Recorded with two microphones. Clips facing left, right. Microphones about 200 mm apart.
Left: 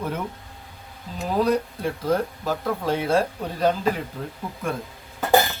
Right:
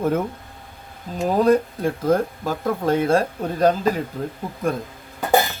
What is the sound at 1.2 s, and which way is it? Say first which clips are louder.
Speech: right 5 dB; 45° right (ahead or behind).